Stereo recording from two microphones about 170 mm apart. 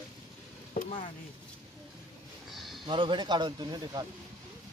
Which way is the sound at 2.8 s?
30° right (ahead or behind).